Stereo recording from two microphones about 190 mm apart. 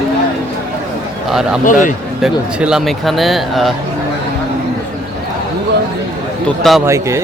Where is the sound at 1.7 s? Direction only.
45° left (ahead or behind).